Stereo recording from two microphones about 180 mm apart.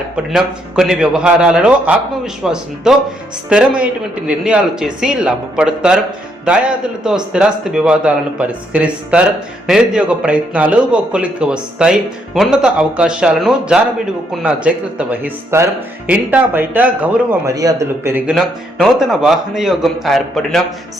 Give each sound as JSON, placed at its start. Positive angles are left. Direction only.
{"t": 0.3, "sound": "a man's voice", "side_deg": 0}
{"t": 17.5, "sound": "speech", "side_deg": -20}
{"t": 18.3, "sound": "a man's voice", "side_deg": 0}